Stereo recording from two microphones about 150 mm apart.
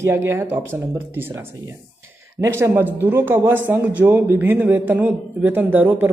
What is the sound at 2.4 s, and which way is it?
Speech, 15° right (ahead or behind).